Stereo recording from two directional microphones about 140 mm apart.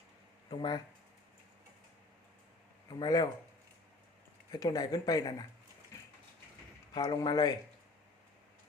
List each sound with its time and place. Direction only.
0.5 s speech: 30° left (ahead or behind)
3.0 s speech: 30° left (ahead or behind)
4.5 s speech: 25° left (ahead or behind)
5.9 s a sound: 20° left (ahead or behind)
6.9 s speech: 25° left (ahead or behind)